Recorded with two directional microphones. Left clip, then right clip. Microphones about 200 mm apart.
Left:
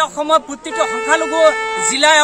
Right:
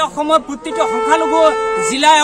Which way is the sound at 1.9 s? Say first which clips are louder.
Right 1 dB; 10° left (ahead or behind).